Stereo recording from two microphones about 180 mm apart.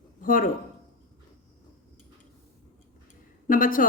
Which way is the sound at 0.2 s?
50° left (ahead or behind).